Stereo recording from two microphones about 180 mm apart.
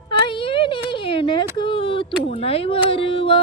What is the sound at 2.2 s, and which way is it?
Speech, 35° left (ahead or behind).